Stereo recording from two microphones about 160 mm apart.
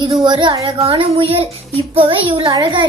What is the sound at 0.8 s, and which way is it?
A child's voice, 35° right (ahead or behind).